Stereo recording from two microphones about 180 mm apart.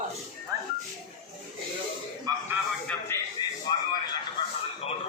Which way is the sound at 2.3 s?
20° right (ahead or behind).